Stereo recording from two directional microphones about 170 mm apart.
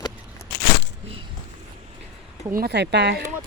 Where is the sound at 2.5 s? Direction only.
70° right (ahead or behind).